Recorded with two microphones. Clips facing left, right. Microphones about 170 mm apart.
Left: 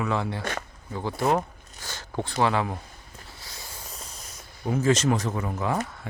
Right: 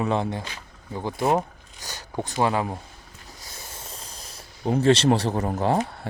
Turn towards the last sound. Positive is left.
turn(degrees=-30)  # may be behind; listen again after turning